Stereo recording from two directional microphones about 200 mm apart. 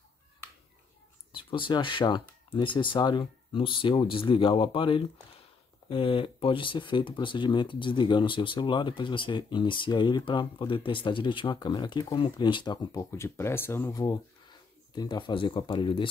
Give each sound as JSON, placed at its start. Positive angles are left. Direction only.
{"t": 1.3, "sound": "speech", "side_deg": 25}